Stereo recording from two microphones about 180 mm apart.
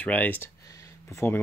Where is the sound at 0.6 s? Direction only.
20° left (ahead or behind).